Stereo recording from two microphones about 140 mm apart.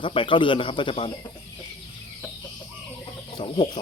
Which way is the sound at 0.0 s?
35° left (ahead or behind).